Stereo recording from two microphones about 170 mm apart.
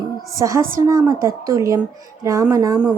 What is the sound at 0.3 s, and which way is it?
A woman's voice, 20° right (ahead or behind).